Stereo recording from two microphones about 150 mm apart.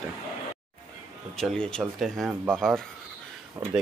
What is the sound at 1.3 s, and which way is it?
Speech, 5° left (ahead or behind).